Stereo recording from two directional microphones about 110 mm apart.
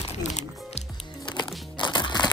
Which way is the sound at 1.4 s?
45° left (ahead or behind).